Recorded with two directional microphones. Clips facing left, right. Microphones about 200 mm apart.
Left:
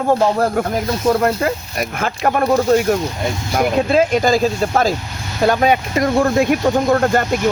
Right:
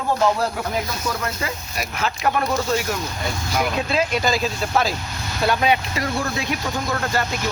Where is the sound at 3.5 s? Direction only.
50° left (ahead or behind).